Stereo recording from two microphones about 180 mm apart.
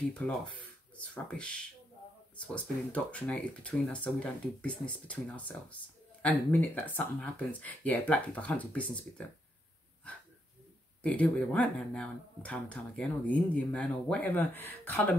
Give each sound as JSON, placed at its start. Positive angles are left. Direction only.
{"t": 0.2, "sound": "speech", "side_deg": 10}
{"t": 11.0, "sound": "speech", "side_deg": 5}